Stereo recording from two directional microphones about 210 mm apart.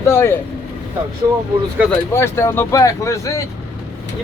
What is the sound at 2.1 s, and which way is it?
Speech, 10° left (ahead or behind).